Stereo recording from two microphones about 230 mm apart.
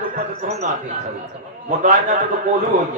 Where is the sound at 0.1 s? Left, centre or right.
Right.